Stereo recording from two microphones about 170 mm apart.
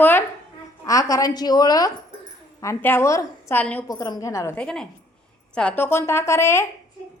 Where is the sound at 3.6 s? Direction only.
5° left (ahead or behind).